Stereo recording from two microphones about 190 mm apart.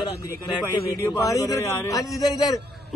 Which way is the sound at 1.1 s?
15° left (ahead or behind).